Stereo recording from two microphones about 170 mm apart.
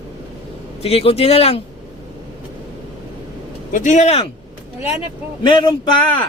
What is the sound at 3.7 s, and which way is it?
Speech, 50° left (ahead or behind).